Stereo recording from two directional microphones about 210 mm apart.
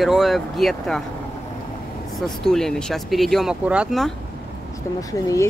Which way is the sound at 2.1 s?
Centre (ahead or behind).